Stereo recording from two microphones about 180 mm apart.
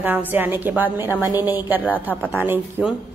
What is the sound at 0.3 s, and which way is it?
Speech, 10° right (ahead or behind).